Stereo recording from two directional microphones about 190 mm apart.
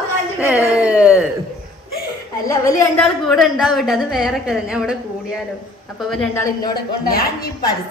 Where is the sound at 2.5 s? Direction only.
15° left (ahead or behind).